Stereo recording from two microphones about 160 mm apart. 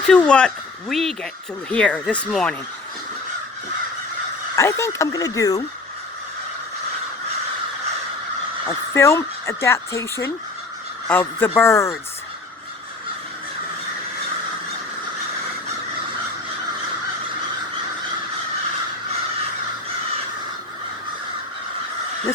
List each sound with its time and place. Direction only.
0.1 s speech: 5° left (ahead or behind)
4.5 s speech: 20° left (ahead or behind)
8.6 s speech: 15° left (ahead or behind)